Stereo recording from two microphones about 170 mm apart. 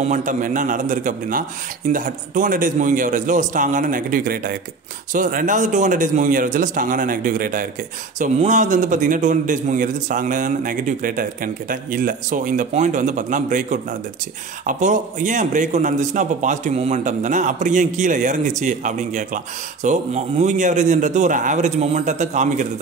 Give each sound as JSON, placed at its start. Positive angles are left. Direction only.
{"t": 0.0, "sound": "a man's voice", "side_deg": -45}